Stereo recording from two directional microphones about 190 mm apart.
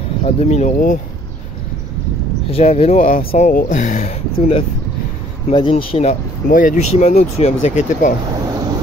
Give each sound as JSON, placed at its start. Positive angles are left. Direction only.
{"t": 0.2, "sound": "speech", "side_deg": 35}
{"t": 2.5, "sound": "speech", "side_deg": 35}